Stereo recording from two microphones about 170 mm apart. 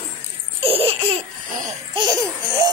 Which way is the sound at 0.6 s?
35° right (ahead or behind).